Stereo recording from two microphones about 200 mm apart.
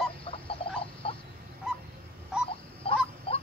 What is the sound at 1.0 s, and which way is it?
Fowl, 30° left (ahead or behind).